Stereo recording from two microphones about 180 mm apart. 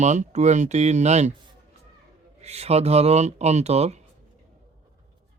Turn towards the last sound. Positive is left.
turn(degrees=-35)  # may be behind; listen again after turning